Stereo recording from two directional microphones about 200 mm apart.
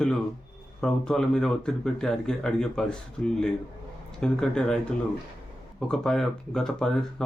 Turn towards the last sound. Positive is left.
turn(degrees=5)  # may be behind; listen again after turning